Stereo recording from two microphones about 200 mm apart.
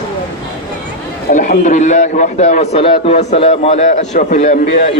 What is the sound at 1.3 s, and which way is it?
A man's voice, 40° left (ahead or behind).